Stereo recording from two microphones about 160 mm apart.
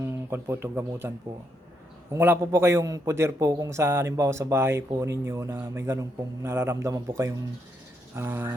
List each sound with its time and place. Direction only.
0.0 s speech: 15° right (ahead or behind)
2.1 s a man's voice: 15° right (ahead or behind)